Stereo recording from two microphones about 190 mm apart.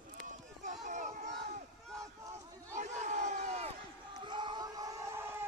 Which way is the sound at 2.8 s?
40° right (ahead or behind).